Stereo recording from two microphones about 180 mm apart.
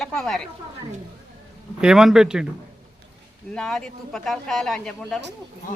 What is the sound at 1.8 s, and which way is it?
Speech, 5° right (ahead or behind).